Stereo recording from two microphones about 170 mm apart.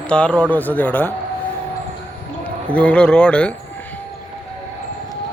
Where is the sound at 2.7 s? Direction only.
5° left (ahead or behind).